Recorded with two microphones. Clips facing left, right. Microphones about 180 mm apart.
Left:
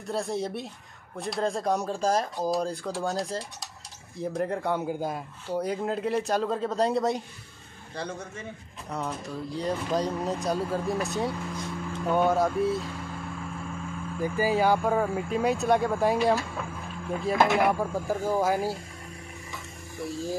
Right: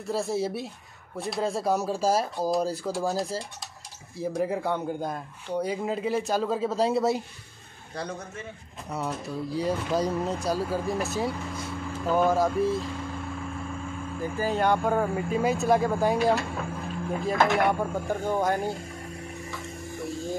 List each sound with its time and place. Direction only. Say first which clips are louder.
0.0 s speech: right 2 dB; centre (ahead or behind)
14.4 s speech: left 1 dB; 5° left (ahead or behind)